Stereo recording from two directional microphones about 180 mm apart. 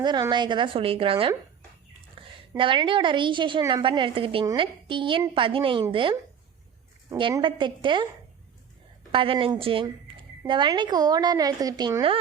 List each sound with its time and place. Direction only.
0.0 s a woman's voice: 25° right (ahead or behind)
2.2 s a sound: 25° right (ahead or behind)
2.6 s a woman's voice: 30° right (ahead or behind)
9.1 s a woman's voice: 30° right (ahead or behind)